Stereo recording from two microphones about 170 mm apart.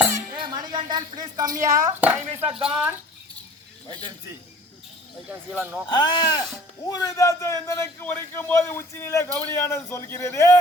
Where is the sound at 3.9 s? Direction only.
25° right (ahead or behind).